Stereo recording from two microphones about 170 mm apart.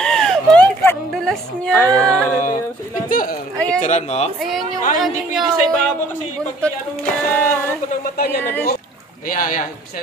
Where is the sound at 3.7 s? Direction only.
45° left (ahead or behind).